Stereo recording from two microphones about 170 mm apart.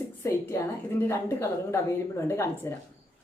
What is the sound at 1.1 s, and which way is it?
Speech, 15° left (ahead or behind).